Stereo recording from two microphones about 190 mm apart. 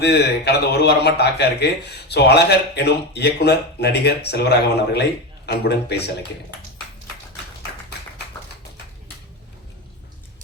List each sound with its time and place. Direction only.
0.0 s speech: 60° left (ahead or behind)